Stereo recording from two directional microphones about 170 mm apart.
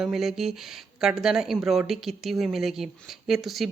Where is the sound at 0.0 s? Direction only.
Centre (ahead or behind).